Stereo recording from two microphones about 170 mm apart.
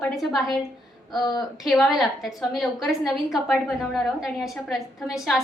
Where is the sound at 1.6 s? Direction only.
Centre (ahead or behind).